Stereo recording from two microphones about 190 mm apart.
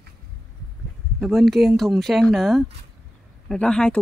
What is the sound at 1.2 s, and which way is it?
A man's voice, centre (ahead or behind).